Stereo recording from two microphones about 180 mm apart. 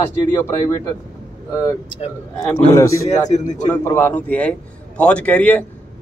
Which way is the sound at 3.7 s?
10° left (ahead or behind).